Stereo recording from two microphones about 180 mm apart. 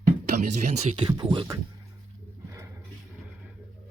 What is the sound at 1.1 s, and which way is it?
Speech, 25° right (ahead or behind).